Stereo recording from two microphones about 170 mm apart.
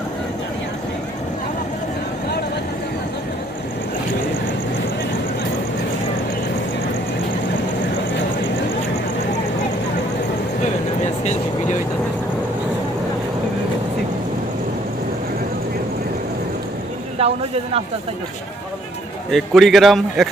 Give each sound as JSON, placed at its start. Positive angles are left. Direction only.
{"t": 11.0, "sound": "vehicle", "side_deg": 40}
{"t": 17.2, "sound": "speech", "side_deg": -35}
{"t": 19.3, "sound": "a man's voice", "side_deg": 0}